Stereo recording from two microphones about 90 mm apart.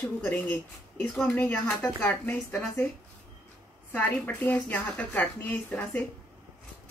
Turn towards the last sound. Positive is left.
turn(degrees=15)  # may be behind; listen again after turning